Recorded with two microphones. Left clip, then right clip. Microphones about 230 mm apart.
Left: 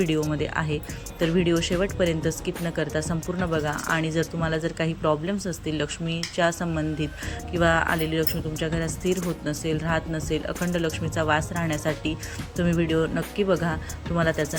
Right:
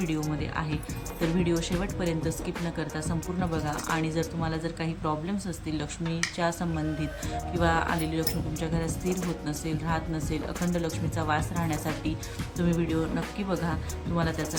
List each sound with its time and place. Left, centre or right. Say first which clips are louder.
0.0 s speech: left 7 dB; centre